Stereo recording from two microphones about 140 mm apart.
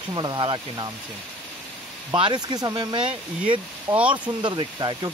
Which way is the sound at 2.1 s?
35° right (ahead or behind).